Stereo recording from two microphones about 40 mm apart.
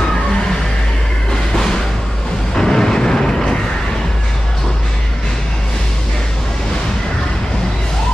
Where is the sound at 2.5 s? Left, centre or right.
Centre.